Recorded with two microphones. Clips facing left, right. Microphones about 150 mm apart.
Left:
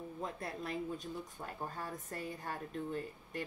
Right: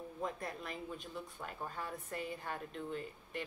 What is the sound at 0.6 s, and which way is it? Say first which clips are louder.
A woman's voice: left 5 dB; 40° left (ahead or behind).